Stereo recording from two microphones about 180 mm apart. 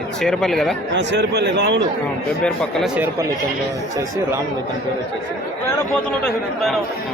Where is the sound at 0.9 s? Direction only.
70° right (ahead or behind).